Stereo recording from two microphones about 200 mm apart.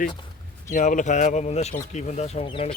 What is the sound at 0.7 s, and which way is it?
Speech, 40° left (ahead or behind).